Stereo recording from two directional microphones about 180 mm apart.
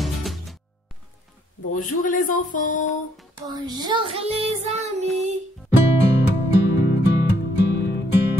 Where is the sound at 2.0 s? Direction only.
45° left (ahead or behind).